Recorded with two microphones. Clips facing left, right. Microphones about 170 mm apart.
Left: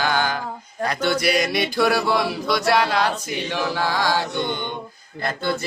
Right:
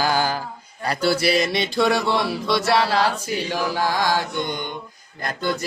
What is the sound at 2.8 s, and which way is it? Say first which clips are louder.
Music: right 1 dB; 30° right (ahead or behind).